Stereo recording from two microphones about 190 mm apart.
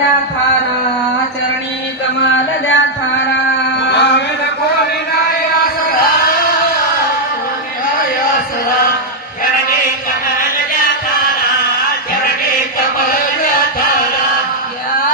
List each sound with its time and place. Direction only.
2.3 s a sound: 80° left
3.8 s music: 65° left (ahead or behind)
13.1 s chant: 45° left (ahead or behind)